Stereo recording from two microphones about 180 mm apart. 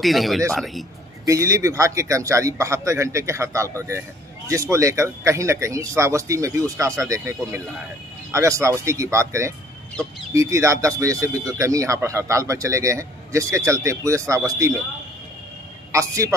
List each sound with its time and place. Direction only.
0.0 s speech: centre (ahead or behind)
1.2 s speech: 15° right (ahead or behind)
15.9 s speech: 15° right (ahead or behind)